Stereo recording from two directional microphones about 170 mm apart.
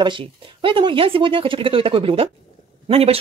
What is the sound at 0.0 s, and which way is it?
Speech, 30° right (ahead or behind).